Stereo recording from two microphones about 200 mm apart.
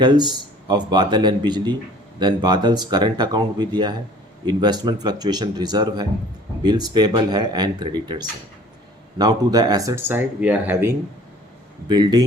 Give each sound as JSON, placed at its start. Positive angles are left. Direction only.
{"t": 0.0, "sound": "speech", "side_deg": -20}